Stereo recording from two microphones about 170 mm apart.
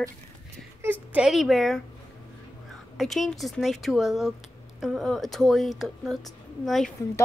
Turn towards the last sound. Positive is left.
turn(degrees=0)  # may be behind; listen again after turning